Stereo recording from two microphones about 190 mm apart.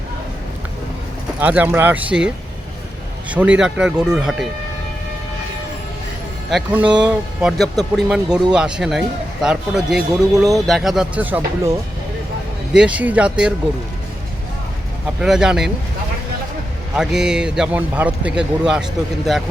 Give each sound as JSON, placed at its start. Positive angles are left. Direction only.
{"t": 1.4, "sound": "speech", "side_deg": -10}
{"t": 6.5, "sound": "speech", "side_deg": -5}
{"t": 12.7, "sound": "speech", "side_deg": -5}
{"t": 15.2, "sound": "speech", "side_deg": -5}
{"t": 16.9, "sound": "speech", "side_deg": -5}